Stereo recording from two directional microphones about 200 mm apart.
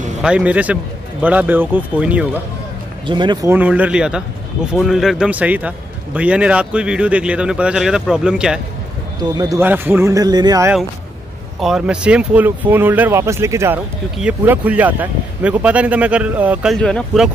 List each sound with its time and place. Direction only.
0.2 s speech: 5° right (ahead or behind)
3.1 s speech: 20° right (ahead or behind)
3.5 s a man's voice: 5° right (ahead or behind)
9.3 s speech: 15° right (ahead or behind)
11.6 s a man's voice: 5° right (ahead or behind)